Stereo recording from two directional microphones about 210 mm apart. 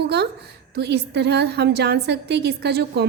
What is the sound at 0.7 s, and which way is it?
A woman's voice, 50° right (ahead or behind).